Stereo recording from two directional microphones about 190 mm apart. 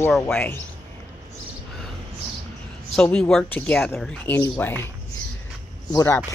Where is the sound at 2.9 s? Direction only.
5° left (ahead or behind).